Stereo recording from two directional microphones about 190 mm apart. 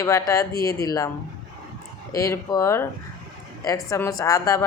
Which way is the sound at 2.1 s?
15° left (ahead or behind).